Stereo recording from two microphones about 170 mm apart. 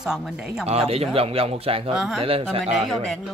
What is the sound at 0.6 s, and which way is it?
Speech, 35° right (ahead or behind).